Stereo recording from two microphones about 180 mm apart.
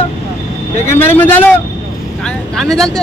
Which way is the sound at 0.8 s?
15° left (ahead or behind).